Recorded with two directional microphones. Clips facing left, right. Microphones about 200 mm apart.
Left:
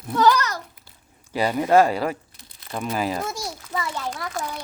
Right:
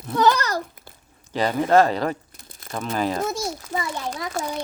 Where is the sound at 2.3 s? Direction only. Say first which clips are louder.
Right 2 dB; 45° right (ahead or behind).